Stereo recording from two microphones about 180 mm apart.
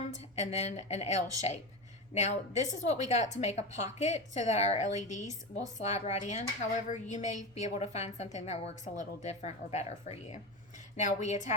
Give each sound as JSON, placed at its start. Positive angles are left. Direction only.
{"t": 0.0, "sound": "a woman's voice", "side_deg": 40}